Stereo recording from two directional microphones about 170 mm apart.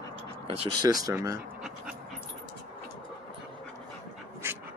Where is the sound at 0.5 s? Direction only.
35° right (ahead or behind).